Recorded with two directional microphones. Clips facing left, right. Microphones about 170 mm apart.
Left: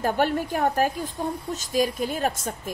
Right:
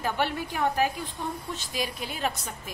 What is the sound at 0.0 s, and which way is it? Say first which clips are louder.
A woman's voice: left 5 dB; 45° left (ahead or behind).